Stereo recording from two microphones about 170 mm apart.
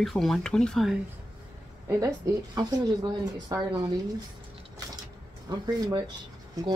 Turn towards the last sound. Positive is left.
turn(degrees=-20)  # may be behind; listen again after turning